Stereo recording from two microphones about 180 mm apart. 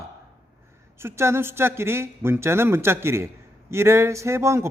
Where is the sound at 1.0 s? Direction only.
15° right (ahead or behind).